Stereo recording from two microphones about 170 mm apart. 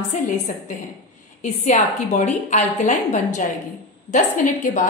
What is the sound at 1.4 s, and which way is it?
A woman's voice, 45° left (ahead or behind).